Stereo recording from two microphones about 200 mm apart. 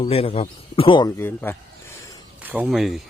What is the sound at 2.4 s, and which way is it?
Speech, 5° right (ahead or behind).